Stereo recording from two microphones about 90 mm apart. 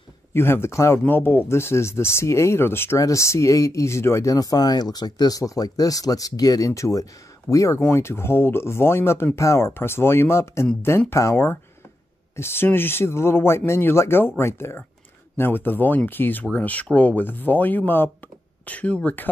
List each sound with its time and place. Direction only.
0.3 s speech: 25° left (ahead or behind)